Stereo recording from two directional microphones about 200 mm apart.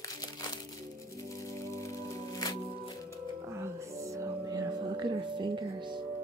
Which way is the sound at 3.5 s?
15° right (ahead or behind).